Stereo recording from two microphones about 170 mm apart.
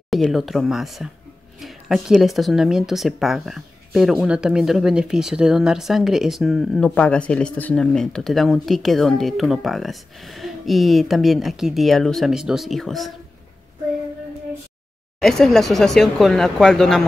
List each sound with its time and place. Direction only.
0.1 s speech: centre (ahead or behind)
15.1 s speech: 5° left (ahead or behind)